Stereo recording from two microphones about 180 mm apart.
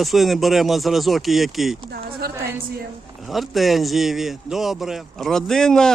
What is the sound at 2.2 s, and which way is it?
Speech, 60° right (ahead or behind).